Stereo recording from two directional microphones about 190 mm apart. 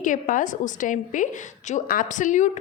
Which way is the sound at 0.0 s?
45° left (ahead or behind).